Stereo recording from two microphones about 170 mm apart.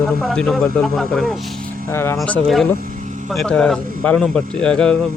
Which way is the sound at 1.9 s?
15° left (ahead or behind).